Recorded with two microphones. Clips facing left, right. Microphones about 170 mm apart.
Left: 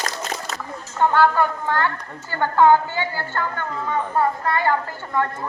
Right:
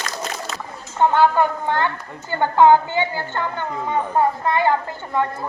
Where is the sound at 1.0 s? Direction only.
20° right (ahead or behind).